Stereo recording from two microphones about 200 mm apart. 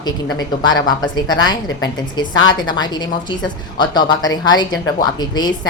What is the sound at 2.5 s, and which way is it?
Speech, 20° left (ahead or behind).